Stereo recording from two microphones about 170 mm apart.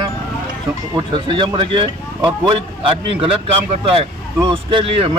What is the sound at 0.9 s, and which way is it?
Speech, 30° right (ahead or behind).